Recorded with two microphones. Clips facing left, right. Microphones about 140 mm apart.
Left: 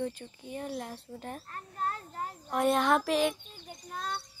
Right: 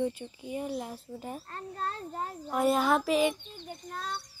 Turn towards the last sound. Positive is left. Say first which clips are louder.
# even
turn(degrees=0)  # may be behind; listen again after turning